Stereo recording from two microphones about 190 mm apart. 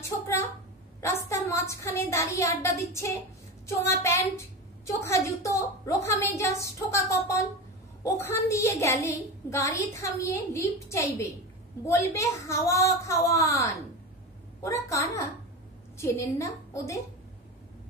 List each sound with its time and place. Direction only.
1.0 s a woman's voice: 15° left (ahead or behind)
14.6 s a woman's voice: 15° left (ahead or behind)